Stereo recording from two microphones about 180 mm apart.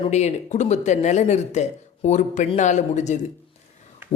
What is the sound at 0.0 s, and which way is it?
A woman's voice, 40° left (ahead or behind).